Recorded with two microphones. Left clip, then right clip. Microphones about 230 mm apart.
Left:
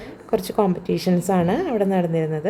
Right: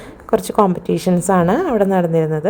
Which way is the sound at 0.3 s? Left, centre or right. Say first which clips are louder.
Right 6 dB; centre.